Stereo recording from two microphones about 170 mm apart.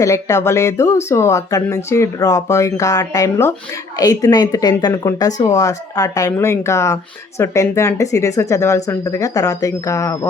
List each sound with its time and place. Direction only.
0.0 s speech: 15° left (ahead or behind)